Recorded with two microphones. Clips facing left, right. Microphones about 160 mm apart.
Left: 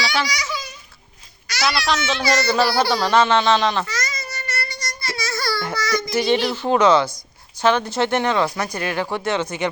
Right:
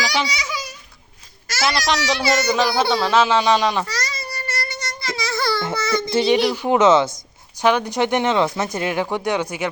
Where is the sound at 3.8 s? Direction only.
30° right (ahead or behind).